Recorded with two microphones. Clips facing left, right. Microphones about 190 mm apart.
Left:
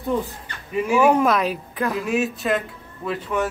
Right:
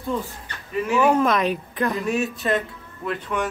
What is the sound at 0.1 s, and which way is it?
Speech, 15° left (ahead or behind).